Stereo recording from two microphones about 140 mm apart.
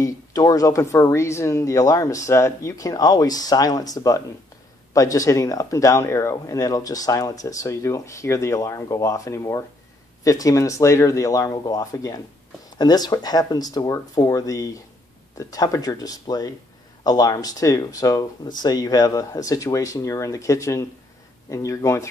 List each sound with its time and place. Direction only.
0.0 s speech: 25° left (ahead or behind)